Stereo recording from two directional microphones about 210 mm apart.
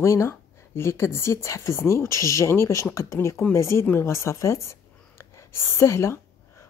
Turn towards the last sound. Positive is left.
turn(degrees=10)  # may be behind; listen again after turning